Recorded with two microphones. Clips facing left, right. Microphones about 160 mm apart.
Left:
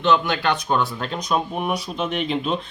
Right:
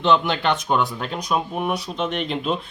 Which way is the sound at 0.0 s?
30° right (ahead or behind).